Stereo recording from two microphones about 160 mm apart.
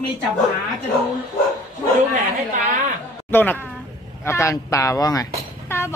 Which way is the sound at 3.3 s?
10° left (ahead or behind).